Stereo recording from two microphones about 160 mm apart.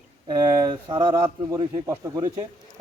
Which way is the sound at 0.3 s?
30° right (ahead or behind).